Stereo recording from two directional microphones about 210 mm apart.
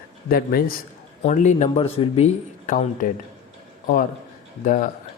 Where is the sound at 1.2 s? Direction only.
35° left (ahead or behind).